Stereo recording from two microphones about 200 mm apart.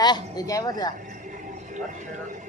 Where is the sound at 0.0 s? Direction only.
20° left (ahead or behind).